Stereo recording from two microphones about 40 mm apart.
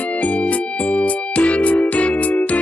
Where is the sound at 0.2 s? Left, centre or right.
Left.